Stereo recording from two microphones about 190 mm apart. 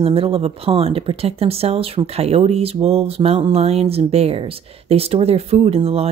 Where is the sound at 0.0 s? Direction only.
30° right (ahead or behind).